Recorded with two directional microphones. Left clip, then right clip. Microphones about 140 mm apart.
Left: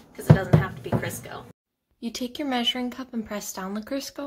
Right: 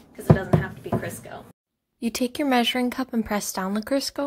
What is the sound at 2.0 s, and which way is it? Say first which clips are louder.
Speech: right 5 dB; 55° right (ahead or behind).